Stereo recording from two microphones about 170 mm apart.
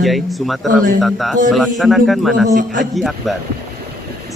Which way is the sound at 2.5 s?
50° right (ahead or behind).